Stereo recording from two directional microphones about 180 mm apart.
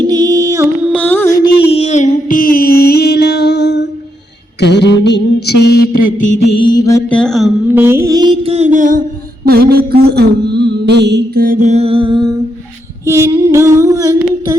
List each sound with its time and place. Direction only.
0.0 s music: 20° right (ahead or behind)
0.9 s music: 10° left (ahead or behind)
1.7 s music: 40° left (ahead or behind); by 3.8 s 70° left (ahead or behind)
4.6 s mantra: 70° left (ahead or behind); by 6.2 s 50° left (ahead or behind)
6.5 s music: 25° left (ahead or behind)
7.1 s a sound: 5° left (ahead or behind)
7.8 s music: 15° right (ahead or behind); by 9.0 s 45° right (ahead or behind)
9.5 s a sound: 60° right (ahead or behind)
11.7 s music: 35° right (ahead or behind)
13.1 s a sound: 15° right (ahead or behind)